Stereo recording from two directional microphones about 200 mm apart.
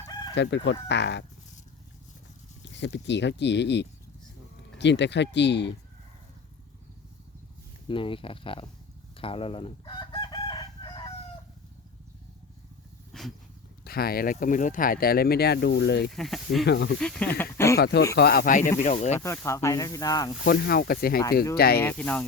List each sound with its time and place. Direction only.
0.0 s chicken: 20° left (ahead or behind)
0.3 s speech: 65° left (ahead or behind)
2.7 s speech: 60° left (ahead or behind)
7.9 s speech: 25° left (ahead or behind)
9.1 s chicken: 25° left (ahead or behind)
13.1 s vehicle: centre (ahead or behind)
13.8 s speech: 50° left (ahead or behind)
16.1 s speech: centre (ahead or behind)
16.6 s speech: 60° left (ahead or behind)
17.0 s speech: 5° left (ahead or behind)
17.7 s speech: 55° left (ahead or behind); by 19.2 s 35° left (ahead or behind)
19.2 s speech: 15° left (ahead or behind)
20.4 s speech: 50° left (ahead or behind)
21.8 s speech: 10° left (ahead or behind)